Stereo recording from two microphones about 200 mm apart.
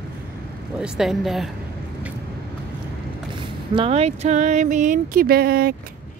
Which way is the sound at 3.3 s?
25° right (ahead or behind).